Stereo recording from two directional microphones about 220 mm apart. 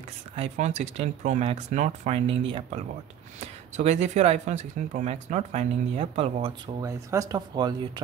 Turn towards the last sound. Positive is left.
turn(degrees=-20)  # may be behind; listen again after turning